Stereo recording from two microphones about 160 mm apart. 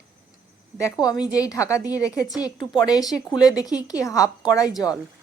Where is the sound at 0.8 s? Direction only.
25° left (ahead or behind).